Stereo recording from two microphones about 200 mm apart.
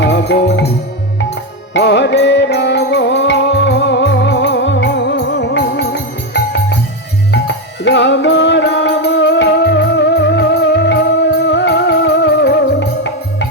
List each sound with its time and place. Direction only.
0.0 s music: 60° left (ahead or behind)
1.7 s music: 60° left (ahead or behind)